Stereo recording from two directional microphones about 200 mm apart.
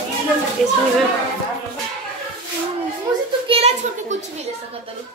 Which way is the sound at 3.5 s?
30° right (ahead or behind).